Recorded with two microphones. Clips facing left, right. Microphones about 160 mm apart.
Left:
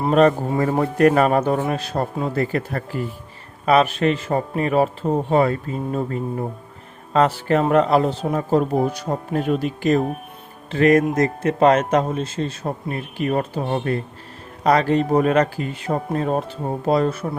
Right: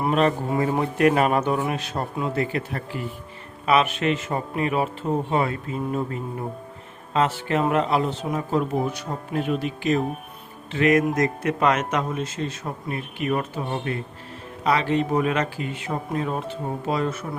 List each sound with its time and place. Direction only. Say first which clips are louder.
0.1 s speech: left 7 dB; 45° left (ahead or behind)